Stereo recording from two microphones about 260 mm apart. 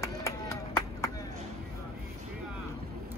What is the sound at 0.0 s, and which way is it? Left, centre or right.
Run, centre.